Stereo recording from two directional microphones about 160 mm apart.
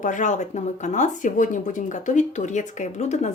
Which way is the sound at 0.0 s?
50° left (ahead or behind).